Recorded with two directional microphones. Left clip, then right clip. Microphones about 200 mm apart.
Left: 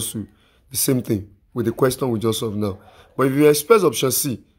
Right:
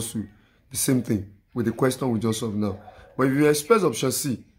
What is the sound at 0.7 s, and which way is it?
Speech, 40° left (ahead or behind).